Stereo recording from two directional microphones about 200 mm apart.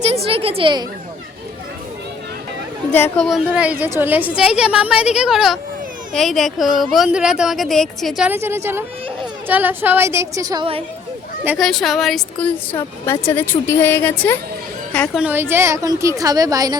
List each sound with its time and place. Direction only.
0.3 s a woman's voice: 30° right (ahead or behind)
2.9 s a woman's voice: 10° left (ahead or behind)
3.2 s a woman's voice: 5° right (ahead or behind); by 10.8 s 25° right (ahead or behind)
11.4 s speech: centre (ahead or behind)
12.7 s a woman's voice: 15° left (ahead or behind)
15.2 s a woman's voice: 10° right (ahead or behind)